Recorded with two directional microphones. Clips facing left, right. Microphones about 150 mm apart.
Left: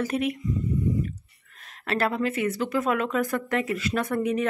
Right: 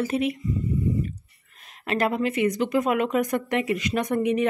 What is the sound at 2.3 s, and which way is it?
Speech, 15° right (ahead or behind).